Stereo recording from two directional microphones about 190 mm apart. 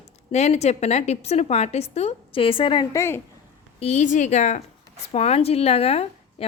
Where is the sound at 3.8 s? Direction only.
40° left (ahead or behind).